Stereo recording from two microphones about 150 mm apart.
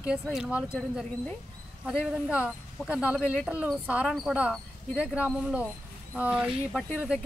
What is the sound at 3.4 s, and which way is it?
Speech, 10° right (ahead or behind).